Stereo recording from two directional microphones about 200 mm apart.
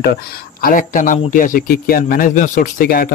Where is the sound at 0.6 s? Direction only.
45° left (ahead or behind).